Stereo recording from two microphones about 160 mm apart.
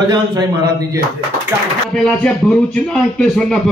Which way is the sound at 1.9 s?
5° left (ahead or behind).